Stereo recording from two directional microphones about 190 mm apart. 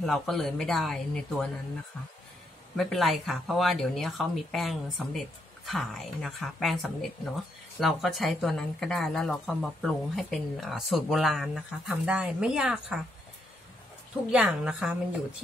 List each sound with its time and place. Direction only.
0.0 s a woman's voice: centre (ahead or behind)
2.7 s a woman's voice: 5° left (ahead or behind)
14.3 s a woman's voice: 5° right (ahead or behind)